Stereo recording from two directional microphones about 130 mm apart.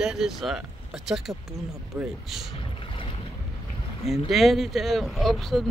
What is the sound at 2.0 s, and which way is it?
Speech, 15° right (ahead or behind).